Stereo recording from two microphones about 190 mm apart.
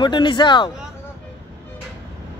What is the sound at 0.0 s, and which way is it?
Speech, 25° left (ahead or behind).